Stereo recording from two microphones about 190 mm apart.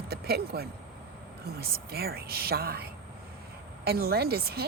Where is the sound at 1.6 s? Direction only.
55° right (ahead or behind).